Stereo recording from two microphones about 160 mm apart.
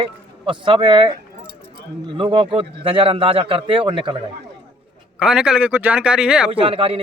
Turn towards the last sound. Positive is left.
turn(degrees=-35)  # may be behind; listen again after turning